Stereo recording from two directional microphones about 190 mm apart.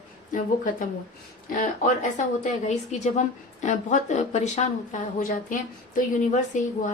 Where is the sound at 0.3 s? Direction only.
45° left (ahead or behind).